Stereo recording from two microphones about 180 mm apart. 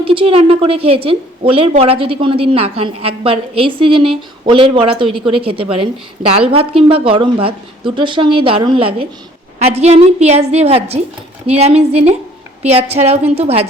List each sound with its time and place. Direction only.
0.0 s a woman's voice: 30° right (ahead or behind)